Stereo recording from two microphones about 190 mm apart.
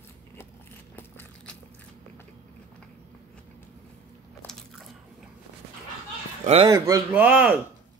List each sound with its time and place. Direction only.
0.9 s biting: 10° left (ahead or behind)
4.4 s biting: centre (ahead or behind)
6.4 s speech: 30° right (ahead or behind)
6.7 s speech: 15° right (ahead or behind)